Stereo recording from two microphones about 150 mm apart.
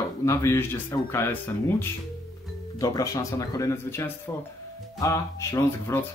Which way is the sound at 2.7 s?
25° left (ahead or behind).